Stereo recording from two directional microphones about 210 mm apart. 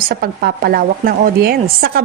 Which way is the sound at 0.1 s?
45° right (ahead or behind).